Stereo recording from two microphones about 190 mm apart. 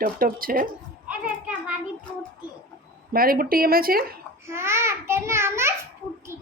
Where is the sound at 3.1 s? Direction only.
50° right (ahead or behind).